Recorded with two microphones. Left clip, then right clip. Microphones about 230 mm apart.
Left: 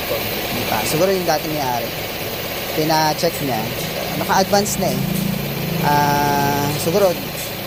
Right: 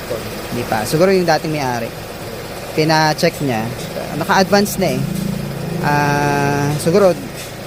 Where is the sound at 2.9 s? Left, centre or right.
Right.